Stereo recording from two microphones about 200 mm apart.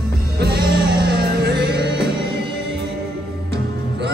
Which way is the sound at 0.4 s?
50° right (ahead or behind).